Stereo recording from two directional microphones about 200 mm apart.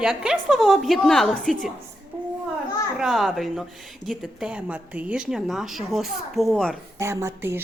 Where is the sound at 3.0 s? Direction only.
Centre (ahead or behind).